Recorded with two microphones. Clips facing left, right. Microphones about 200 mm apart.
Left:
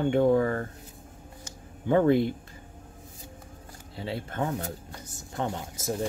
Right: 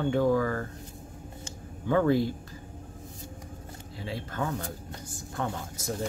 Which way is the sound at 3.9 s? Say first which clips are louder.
Left 2 dB; 25° left (ahead or behind).